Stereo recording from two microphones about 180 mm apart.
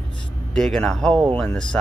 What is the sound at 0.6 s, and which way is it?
Speech, centre (ahead or behind).